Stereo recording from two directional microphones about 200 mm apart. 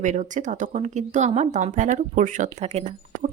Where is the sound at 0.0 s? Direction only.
40° right (ahead or behind).